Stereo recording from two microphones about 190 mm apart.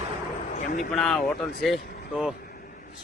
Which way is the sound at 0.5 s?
40° left (ahead or behind).